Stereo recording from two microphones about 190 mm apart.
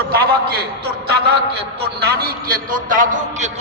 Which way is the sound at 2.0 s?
55° right (ahead or behind).